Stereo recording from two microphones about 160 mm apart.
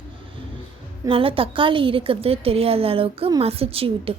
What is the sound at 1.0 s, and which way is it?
A woman's voice, 35° right (ahead or behind).